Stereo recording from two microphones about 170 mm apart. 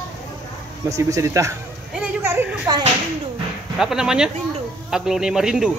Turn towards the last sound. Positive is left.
turn(degrees=-5)  # may be behind; listen again after turning